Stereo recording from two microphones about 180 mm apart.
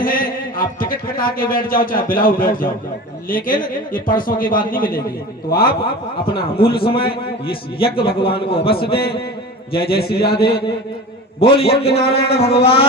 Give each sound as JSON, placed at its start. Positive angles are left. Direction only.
{"t": 0.0, "sound": "a man's voice", "side_deg": 50}
{"t": 6.7, "sound": "a man's voice", "side_deg": 30}
{"t": 10.2, "sound": "a man's voice", "side_deg": 60}
{"t": 11.3, "sound": "a man's voice", "side_deg": 30}